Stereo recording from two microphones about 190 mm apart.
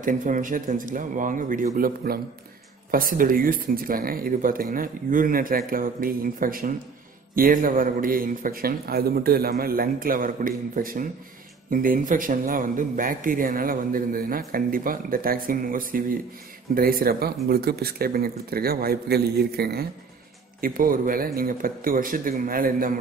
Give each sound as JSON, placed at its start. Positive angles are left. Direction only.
{"t": 0.0, "sound": "speech", "side_deg": -45}